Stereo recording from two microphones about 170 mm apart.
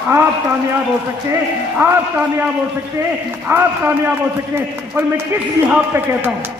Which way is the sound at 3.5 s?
15° right (ahead or behind).